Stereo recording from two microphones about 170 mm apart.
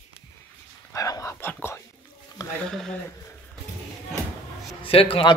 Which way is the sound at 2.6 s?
Centre (ahead or behind).